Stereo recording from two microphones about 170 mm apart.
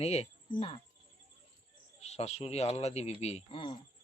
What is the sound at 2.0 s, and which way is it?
A woman's voice, 40° left (ahead or behind).